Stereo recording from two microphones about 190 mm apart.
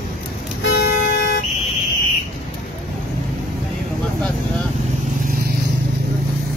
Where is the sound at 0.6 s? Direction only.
60° left (ahead or behind).